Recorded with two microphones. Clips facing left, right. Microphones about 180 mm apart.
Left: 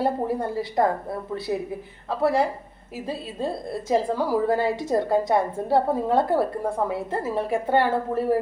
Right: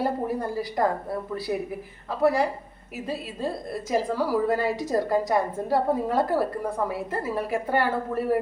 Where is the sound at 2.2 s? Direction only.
30° left (ahead or behind).